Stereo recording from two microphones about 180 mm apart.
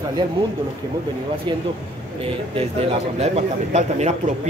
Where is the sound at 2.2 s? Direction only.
30° right (ahead or behind).